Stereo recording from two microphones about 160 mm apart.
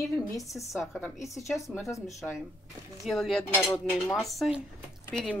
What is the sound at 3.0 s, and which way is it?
Speech, centre (ahead or behind).